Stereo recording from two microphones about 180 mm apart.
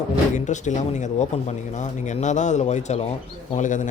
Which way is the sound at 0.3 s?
40° left (ahead or behind).